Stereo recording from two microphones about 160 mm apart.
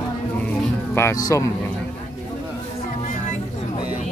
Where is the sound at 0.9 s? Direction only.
20° left (ahead or behind).